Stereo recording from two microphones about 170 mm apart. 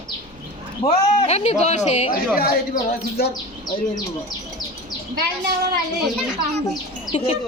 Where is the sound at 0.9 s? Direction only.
40° left (ahead or behind).